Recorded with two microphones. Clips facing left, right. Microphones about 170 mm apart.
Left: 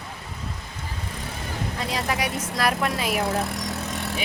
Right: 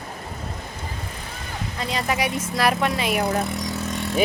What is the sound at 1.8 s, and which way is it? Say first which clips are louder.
A woman's voice: right 3 dB; centre (ahead or behind).